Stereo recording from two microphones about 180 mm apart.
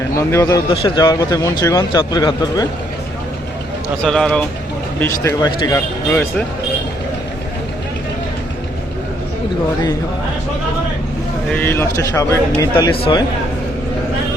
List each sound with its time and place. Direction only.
0.2 s speech: 15° left (ahead or behind)
0.7 s speech: 30° left (ahead or behind)
4.0 s speech: 5° left (ahead or behind)
4.9 s speech: 15° left (ahead or behind)
11.5 s speech: 10° left (ahead or behind)
12.9 s speech: 25° left (ahead or behind)